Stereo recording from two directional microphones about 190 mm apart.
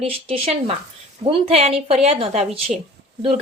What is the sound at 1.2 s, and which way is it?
Speech, 30° right (ahead or behind).